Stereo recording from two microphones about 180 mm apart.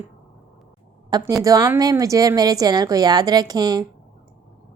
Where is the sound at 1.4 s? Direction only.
20° right (ahead or behind).